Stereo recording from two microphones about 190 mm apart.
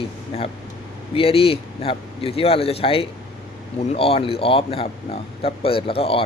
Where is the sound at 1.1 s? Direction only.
30° left (ahead or behind).